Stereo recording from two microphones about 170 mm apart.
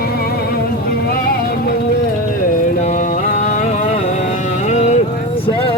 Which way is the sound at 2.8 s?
45° left (ahead or behind).